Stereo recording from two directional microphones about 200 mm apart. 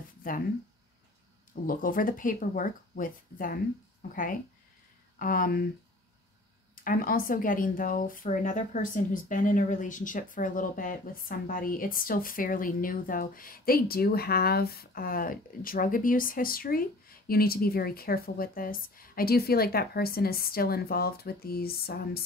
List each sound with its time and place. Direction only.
1.5 s speech: 45° left (ahead or behind)
6.7 s speech: 45° left (ahead or behind)